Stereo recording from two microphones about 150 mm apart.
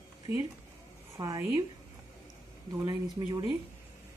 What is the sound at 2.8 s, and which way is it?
Speech, 25° right (ahead or behind).